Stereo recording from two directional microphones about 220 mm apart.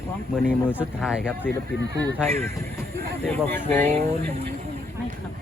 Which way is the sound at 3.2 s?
5° left (ahead or behind).